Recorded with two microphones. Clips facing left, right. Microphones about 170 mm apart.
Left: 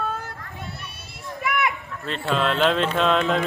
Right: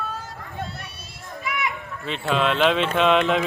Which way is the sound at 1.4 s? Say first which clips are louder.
Left 4 dB; 60° left (ahead or behind).